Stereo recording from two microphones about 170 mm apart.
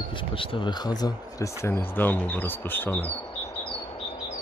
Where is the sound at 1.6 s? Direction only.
15° left (ahead or behind).